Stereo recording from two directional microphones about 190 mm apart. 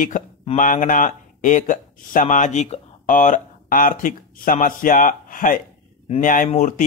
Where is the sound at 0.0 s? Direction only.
45° left (ahead or behind).